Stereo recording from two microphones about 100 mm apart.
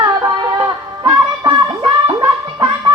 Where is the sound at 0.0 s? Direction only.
35° right (ahead or behind).